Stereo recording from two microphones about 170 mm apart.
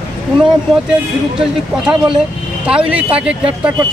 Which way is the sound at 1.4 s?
5° right (ahead or behind).